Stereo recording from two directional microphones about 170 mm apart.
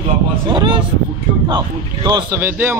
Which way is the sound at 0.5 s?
25° right (ahead or behind).